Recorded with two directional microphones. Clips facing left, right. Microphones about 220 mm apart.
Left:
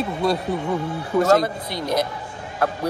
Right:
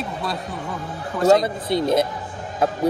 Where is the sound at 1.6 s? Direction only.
25° right (ahead or behind).